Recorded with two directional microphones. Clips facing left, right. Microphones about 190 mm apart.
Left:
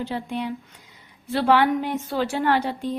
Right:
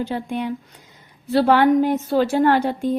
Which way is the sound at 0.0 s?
50° right (ahead or behind).